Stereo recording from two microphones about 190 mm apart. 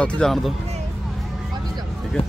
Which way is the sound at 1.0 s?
Centre (ahead or behind).